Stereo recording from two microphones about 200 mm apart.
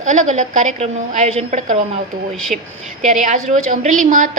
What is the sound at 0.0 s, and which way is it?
A woman's voice, 35° right (ahead or behind).